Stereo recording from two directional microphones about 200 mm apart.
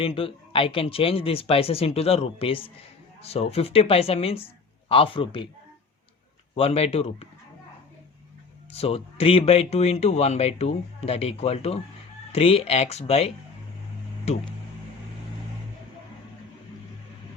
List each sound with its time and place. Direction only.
0.0 s speech: 25° left (ahead or behind)
6.5 s speech: 30° left (ahead or behind)
8.7 s speech: 30° left (ahead or behind)